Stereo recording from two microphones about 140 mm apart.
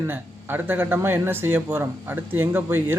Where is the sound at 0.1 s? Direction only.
15° right (ahead or behind).